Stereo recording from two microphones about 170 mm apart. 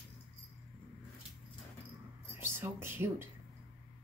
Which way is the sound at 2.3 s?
15° right (ahead or behind).